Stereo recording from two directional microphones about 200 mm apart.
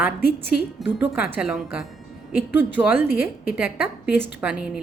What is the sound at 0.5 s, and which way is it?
Speech, 60° left (ahead or behind).